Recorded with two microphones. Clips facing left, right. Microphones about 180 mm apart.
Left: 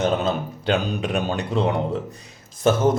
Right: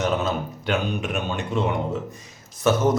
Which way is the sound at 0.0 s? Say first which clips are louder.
Left 2 dB; 30° left (ahead or behind).